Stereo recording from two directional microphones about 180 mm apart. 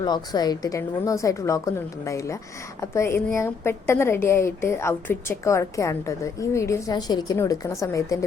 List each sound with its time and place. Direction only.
0.0 s a woman's voice: 25° left (ahead or behind)